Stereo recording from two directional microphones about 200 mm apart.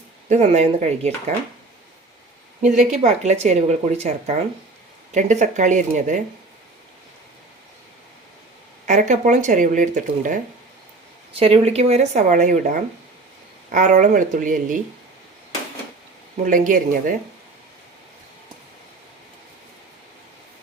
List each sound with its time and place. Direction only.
0.3 s speech: 35° right (ahead or behind)
2.6 s speech: 40° right (ahead or behind)
8.9 s speech: 40° right (ahead or behind)
11.3 s speech: 30° right (ahead or behind)
16.5 s speech: 40° right (ahead or behind)